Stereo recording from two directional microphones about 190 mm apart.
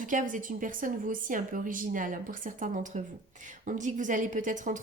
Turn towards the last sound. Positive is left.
turn(degrees=-45)  # may be behind; listen again after turning